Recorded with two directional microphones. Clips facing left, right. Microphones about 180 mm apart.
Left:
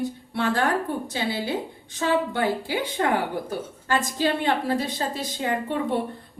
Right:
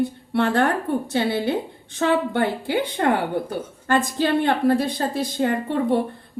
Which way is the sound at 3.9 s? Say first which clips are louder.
Right 4 dB; 55° right (ahead or behind).